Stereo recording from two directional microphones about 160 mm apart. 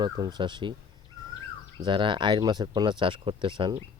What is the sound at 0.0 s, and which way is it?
Speech, 25° right (ahead or behind).